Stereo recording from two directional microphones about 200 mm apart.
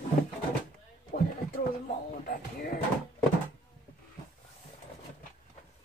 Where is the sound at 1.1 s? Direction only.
50° left (ahead or behind).